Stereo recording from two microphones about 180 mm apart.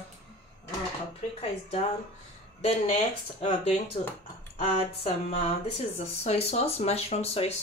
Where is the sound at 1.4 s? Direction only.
35° left (ahead or behind).